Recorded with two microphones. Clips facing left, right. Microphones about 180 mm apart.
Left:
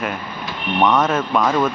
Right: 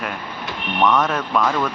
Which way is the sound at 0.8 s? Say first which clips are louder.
Left 1 dB; 20° left (ahead or behind).